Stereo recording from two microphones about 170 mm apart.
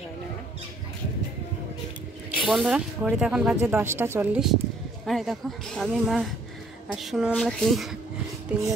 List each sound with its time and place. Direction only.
2.3 s speech: 5° right (ahead or behind)